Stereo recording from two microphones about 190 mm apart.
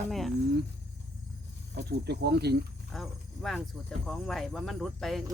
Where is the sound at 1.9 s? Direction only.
60° right (ahead or behind).